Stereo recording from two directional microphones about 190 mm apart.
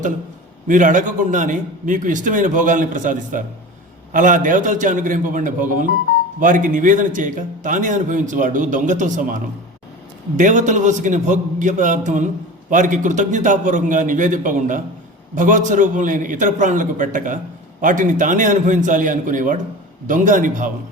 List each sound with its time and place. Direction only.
0.7 s a man's voice: 45° right (ahead or behind)